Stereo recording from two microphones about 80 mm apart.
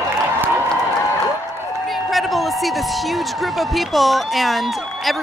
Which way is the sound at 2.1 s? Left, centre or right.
Centre.